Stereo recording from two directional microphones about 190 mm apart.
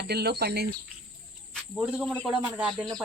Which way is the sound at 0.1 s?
60° right (ahead or behind).